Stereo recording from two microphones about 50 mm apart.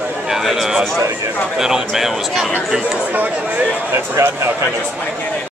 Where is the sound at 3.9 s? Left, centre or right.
Right.